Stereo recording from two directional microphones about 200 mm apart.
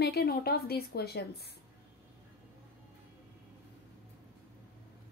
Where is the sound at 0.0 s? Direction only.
50° left (ahead or behind).